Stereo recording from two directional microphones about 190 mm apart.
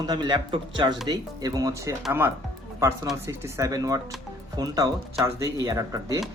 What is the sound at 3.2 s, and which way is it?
Speech, 15° right (ahead or behind).